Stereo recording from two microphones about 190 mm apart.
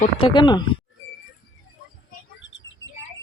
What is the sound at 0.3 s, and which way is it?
Speech, 25° left (ahead or behind).